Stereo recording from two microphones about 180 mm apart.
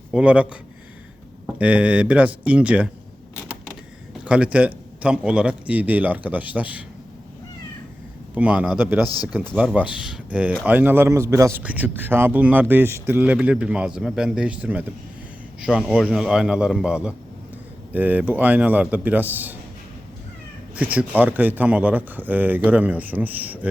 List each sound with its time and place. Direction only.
0.1 s a man's voice: 5° right (ahead or behind)
1.5 s a man's voice: 5° right (ahead or behind)
4.2 s a man's voice: 5° right (ahead or behind)
8.4 s a man's voice: 5° right (ahead or behind)
9.0 s speech: 20° left (ahead or behind)
9.6 s a man's voice: 5° right (ahead or behind)
20.7 s a man's voice: 10° right (ahead or behind)